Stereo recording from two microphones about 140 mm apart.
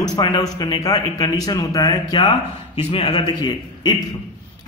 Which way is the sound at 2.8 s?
40° left (ahead or behind).